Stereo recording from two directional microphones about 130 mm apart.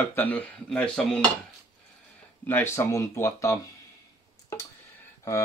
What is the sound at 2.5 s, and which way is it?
Speech, 15° left (ahead or behind).